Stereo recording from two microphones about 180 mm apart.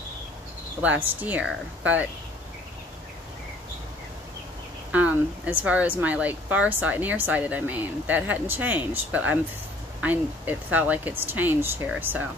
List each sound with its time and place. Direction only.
0.7 s speech: 10° right (ahead or behind)
4.9 s speech: 10° right (ahead or behind)